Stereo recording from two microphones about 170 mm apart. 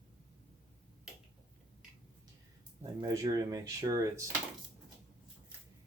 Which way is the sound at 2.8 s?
20° right (ahead or behind).